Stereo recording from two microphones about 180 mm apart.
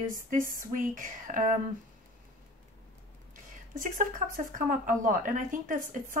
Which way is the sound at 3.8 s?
45° right (ahead or behind).